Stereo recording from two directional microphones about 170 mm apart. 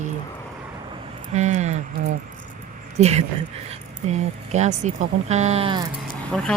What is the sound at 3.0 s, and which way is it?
Speech, 40° right (ahead or behind).